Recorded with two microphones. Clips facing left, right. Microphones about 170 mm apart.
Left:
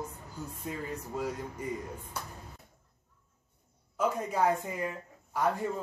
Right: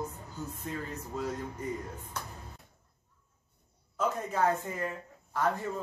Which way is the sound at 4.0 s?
10° left (ahead or behind).